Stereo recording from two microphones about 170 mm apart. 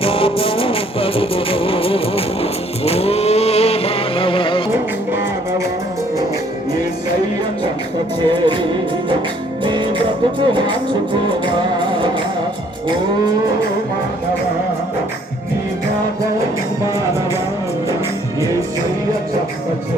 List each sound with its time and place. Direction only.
0.0 s music: 35° left (ahead or behind)
8.3 s music: 25° right (ahead or behind)
9.6 s music: 25° right (ahead or behind)
18.3 s music: 15° right (ahead or behind)